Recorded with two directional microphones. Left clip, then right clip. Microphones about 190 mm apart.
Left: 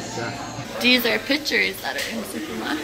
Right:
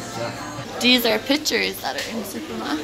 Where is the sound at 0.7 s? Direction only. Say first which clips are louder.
Right 1 dB; 15° right (ahead or behind).